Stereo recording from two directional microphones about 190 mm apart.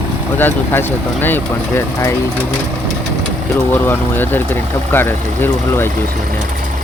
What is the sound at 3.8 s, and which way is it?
Speech, 10° left (ahead or behind).